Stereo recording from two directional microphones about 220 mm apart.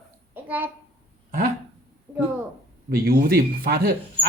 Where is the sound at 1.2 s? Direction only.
40° right (ahead or behind).